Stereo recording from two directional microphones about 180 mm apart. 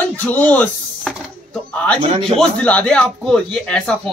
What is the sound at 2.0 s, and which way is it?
Speech, 30° right (ahead or behind).